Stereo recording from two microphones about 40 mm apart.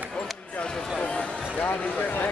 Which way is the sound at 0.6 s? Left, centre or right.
Centre.